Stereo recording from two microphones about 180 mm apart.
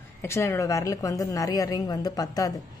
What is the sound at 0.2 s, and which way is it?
A woman's voice, 15° left (ahead or behind).